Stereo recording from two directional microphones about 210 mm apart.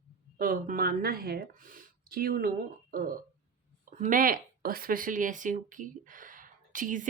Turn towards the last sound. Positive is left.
turn(degrees=-40)  # may be behind; listen again after turning